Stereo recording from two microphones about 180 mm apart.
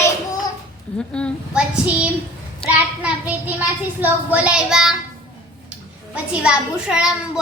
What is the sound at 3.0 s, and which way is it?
A child's voice, 10° right (ahead or behind).